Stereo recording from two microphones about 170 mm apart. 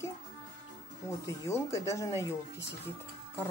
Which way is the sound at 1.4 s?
15° left (ahead or behind).